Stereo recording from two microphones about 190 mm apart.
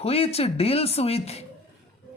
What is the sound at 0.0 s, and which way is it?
Speech, 30° left (ahead or behind).